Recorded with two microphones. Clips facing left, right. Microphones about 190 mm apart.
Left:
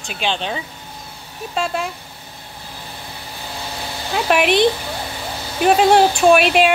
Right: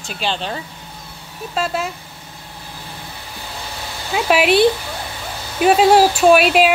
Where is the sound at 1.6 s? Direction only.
Centre (ahead or behind).